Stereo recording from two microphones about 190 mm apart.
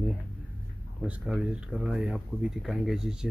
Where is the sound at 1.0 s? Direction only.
5° right (ahead or behind).